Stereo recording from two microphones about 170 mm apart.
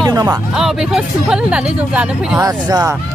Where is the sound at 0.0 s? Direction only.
20° right (ahead or behind).